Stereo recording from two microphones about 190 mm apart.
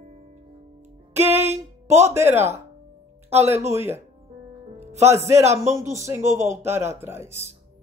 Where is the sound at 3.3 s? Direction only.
35° right (ahead or behind).